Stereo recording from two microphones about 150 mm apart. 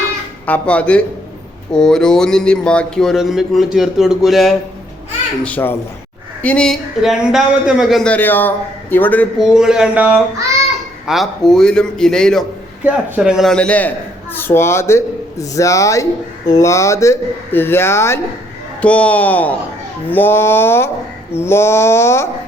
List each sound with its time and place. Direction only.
0.4 s a man's voice: 10° left (ahead or behind)
5.4 s a man's voice: 10° left (ahead or behind)
8.1 s a man's voice: 10° left (ahead or behind)
9.4 s speech: 5° right (ahead or behind)
12.8 s a man's voice: 5° right (ahead or behind); by 22.3 s 20° left (ahead or behind)